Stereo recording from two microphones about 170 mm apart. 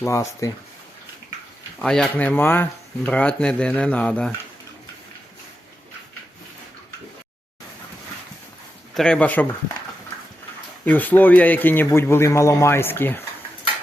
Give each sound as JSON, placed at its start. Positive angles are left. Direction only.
{"t": 0.0, "sound": "speech", "side_deg": 20}
{"t": 1.8, "sound": "speech", "side_deg": 5}
{"t": 9.0, "sound": "speech", "side_deg": 5}
{"t": 10.8, "sound": "speech", "side_deg": 10}